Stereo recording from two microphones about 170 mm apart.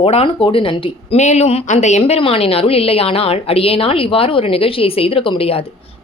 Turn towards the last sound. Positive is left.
turn(degrees=35)  # may be behind; listen again after turning